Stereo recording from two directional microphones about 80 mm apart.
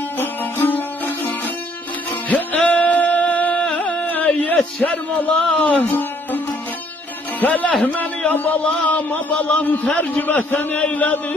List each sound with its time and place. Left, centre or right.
0.2 s music: left
7.3 s a man's voice: centre